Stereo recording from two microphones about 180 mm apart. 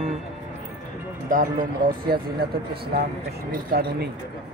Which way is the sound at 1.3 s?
50° right (ahead or behind).